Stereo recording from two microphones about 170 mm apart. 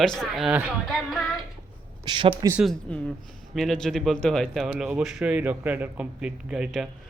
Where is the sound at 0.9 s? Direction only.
Centre (ahead or behind).